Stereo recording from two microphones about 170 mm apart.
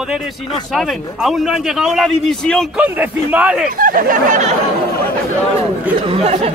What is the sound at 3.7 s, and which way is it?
Speech, 55° right (ahead or behind).